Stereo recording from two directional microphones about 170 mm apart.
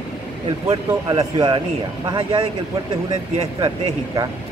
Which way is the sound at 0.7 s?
35° right (ahead or behind).